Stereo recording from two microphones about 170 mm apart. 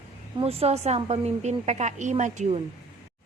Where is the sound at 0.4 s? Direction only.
35° right (ahead or behind).